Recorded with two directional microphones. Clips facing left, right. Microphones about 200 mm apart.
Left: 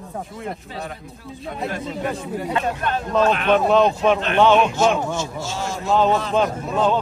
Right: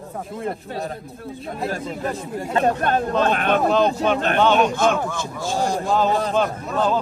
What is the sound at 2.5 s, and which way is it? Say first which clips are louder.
Speech: right 6 dB; 40° right (ahead or behind).